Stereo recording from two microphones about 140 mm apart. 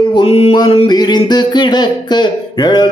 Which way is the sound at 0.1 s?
40° left (ahead or behind).